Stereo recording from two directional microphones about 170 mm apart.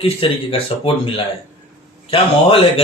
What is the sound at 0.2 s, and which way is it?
Speech, 35° left (ahead or behind).